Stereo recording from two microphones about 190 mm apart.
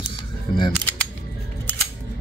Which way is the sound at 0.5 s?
50° left (ahead or behind).